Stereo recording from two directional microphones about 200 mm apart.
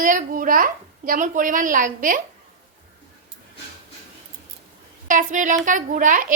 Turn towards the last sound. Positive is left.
turn(degrees=-40)  # may be behind; listen again after turning